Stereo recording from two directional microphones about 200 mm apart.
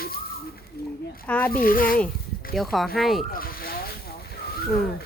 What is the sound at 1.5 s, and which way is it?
Speech, 45° left (ahead or behind).